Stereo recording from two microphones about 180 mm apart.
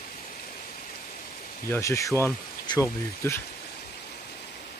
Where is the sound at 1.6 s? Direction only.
15° left (ahead or behind).